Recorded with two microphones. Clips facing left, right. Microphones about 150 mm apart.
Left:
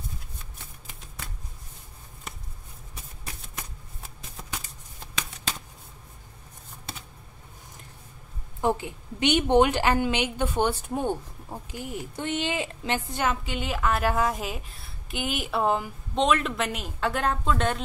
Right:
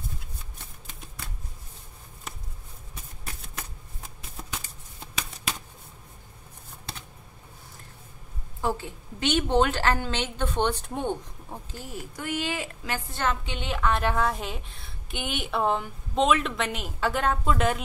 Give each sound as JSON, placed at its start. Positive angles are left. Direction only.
{"t": 8.5, "sound": "a woman's voice", "side_deg": 15}
{"t": 13.3, "sound": "a woman's voice", "side_deg": 5}